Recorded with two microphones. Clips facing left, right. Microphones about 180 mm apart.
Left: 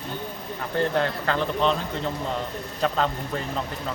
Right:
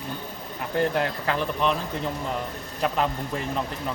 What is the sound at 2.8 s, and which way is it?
Speech, 10° right (ahead or behind).